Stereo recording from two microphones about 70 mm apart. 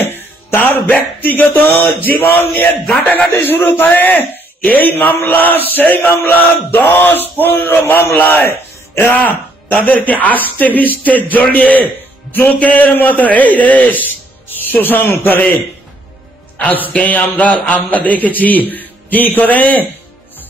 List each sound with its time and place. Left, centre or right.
0.0 s music: left
0.8 s a man's voice: left
16.5 s a man's voice: left